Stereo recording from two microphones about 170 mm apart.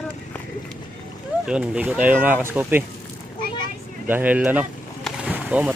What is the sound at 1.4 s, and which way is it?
Speech, 5° right (ahead or behind).